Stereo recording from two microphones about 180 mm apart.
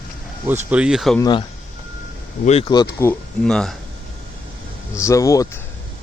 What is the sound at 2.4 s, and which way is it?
Speech, 40° left (ahead or behind).